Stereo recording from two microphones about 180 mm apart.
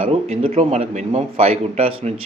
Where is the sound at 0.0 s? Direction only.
35° right (ahead or behind).